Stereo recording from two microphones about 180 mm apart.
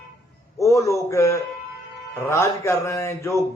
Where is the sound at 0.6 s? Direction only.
15° left (ahead or behind).